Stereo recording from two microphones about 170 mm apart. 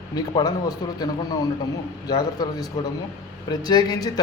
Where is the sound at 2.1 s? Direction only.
25° left (ahead or behind).